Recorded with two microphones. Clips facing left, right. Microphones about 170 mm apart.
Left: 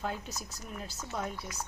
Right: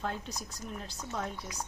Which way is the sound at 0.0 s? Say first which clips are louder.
Even; 5° left (ahead or behind).